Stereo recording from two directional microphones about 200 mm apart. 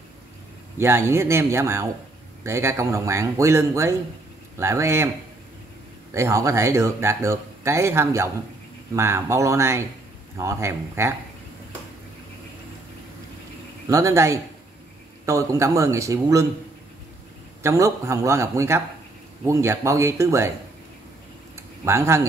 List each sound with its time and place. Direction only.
0.7 s speech: 15° right (ahead or behind)
6.1 s speech: 15° right (ahead or behind)
13.8 s speech: 15° right (ahead or behind)
17.6 s speech: 15° right (ahead or behind)
21.5 s speech: 15° right (ahead or behind)